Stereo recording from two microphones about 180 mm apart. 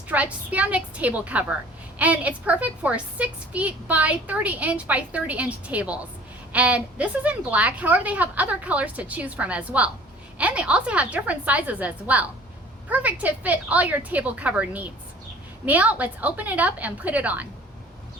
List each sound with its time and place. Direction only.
0.1 s a woman's voice: 10° right (ahead or behind)